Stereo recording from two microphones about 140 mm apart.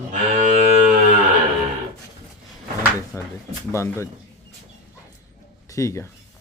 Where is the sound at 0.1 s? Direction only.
60° right (ahead or behind).